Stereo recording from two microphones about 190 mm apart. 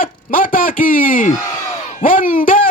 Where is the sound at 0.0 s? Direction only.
45° left (ahead or behind).